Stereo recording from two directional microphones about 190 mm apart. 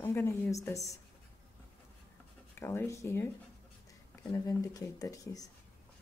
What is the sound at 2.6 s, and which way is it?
A woman's voice, 15° left (ahead or behind).